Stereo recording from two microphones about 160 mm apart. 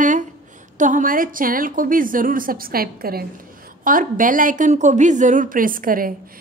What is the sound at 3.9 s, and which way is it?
A woman's voice, 60° right (ahead or behind).